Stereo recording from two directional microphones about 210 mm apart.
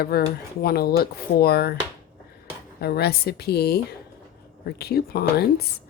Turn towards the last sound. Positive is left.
turn(degrees=50)  # may be behind; listen again after turning